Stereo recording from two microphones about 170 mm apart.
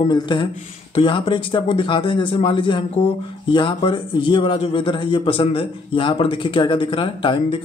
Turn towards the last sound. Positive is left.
turn(degrees=30)  # may be behind; listen again after turning